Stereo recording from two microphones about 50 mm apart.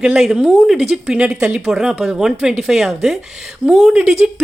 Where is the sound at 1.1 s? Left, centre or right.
Right; by 3.9 s centre.